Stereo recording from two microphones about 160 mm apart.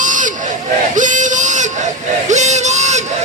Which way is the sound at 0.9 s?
50° right (ahead or behind).